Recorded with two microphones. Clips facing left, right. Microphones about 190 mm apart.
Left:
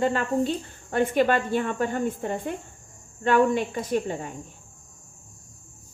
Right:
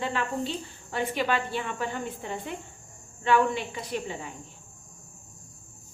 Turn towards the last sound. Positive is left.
turn(degrees=50)  # may be behind; listen again after turning